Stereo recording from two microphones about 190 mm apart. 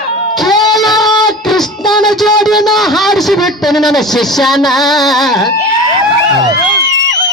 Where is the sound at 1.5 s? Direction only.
Centre (ahead or behind).